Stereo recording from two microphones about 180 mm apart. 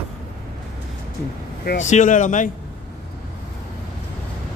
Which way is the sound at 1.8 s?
45° left (ahead or behind).